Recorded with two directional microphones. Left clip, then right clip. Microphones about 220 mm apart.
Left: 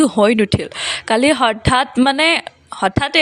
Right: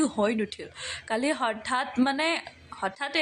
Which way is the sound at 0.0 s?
35° left (ahead or behind).